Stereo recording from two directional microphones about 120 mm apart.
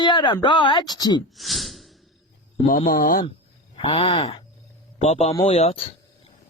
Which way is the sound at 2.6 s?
90° left.